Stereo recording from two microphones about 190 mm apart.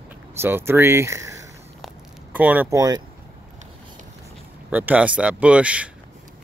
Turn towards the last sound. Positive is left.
turn(degrees=-5)  # may be behind; listen again after turning